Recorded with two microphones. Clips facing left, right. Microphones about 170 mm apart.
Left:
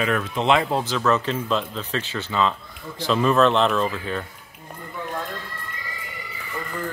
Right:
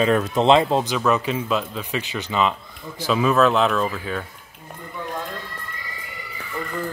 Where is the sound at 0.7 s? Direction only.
15° right (ahead or behind).